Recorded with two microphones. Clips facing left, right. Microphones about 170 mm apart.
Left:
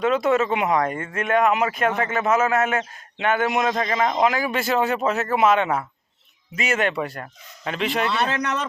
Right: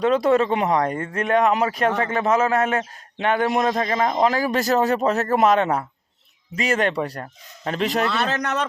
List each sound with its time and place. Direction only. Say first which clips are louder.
0.0 s speech: right 2 dB; 35° right (ahead or behind)